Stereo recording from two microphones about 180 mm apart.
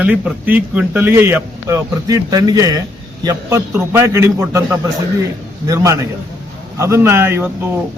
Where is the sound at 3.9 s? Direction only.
15° right (ahead or behind).